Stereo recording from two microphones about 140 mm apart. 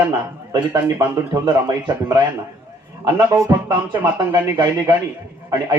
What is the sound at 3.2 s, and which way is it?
A man's voice, 20° right (ahead or behind).